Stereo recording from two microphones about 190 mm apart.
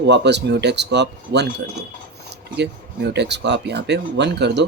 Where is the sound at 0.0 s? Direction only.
65° right (ahead or behind).